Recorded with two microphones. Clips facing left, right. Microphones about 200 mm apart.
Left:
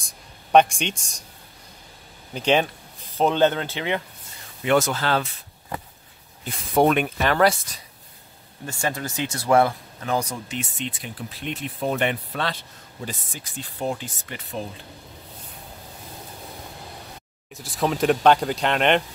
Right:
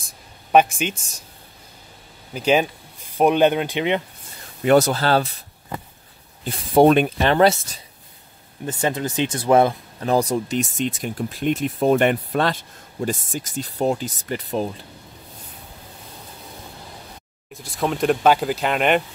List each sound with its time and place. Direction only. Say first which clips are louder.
0.0 s a sound: right 1 dB; 5° right (ahead or behind)
2.3 s speech: right 2 dB; 10° right (ahead or behind)
4.6 s speech: right 5 dB; 35° right (ahead or behind)
6.4 s speech: right 5 dB; 30° right (ahead or behind)
10.0 s speech: right 7 dB; 35° right (ahead or behind)
17.5 s speech: even; centre (ahead or behind)